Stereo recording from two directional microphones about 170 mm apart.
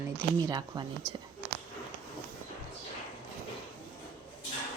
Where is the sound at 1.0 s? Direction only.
5° right (ahead or behind).